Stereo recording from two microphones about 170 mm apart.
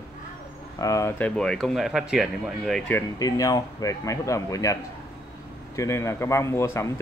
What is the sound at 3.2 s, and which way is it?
Speech, 20° left (ahead or behind).